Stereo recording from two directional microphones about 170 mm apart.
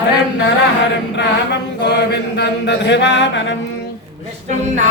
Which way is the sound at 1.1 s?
90° left.